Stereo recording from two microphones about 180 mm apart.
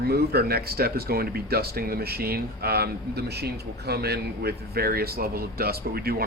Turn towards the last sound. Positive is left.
turn(degrees=-55)  # may be behind; listen again after turning